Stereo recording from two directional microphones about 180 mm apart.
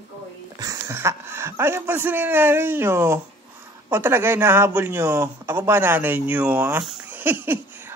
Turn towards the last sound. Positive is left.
turn(degrees=-10)  # may be behind; listen again after turning